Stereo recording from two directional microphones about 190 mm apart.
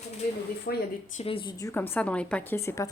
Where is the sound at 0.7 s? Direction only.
55° left (ahead or behind).